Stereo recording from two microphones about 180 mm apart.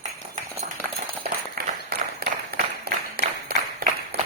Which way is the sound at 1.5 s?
60° right (ahead or behind).